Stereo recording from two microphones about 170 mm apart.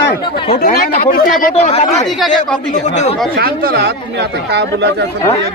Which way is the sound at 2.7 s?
45° left (ahead or behind).